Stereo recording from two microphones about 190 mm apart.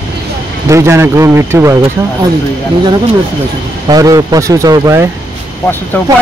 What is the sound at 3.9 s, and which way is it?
Speech, 20° right (ahead or behind).